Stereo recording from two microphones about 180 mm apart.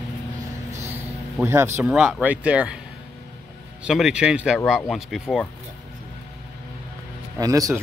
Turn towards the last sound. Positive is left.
turn(degrees=-20)  # may be behind; listen again after turning